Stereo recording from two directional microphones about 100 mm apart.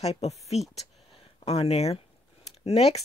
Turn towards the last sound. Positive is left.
turn(degrees=90)